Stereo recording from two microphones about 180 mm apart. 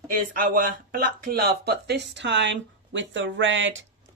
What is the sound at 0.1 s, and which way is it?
Speech, 45° right (ahead or behind).